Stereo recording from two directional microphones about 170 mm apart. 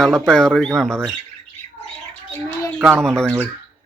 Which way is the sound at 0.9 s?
10° right (ahead or behind).